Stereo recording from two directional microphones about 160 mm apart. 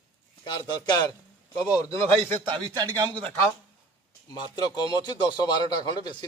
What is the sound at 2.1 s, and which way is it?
A man's voice, 30° right (ahead or behind).